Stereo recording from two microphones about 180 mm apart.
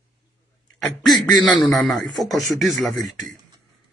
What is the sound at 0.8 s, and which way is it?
A man's voice, centre (ahead or behind).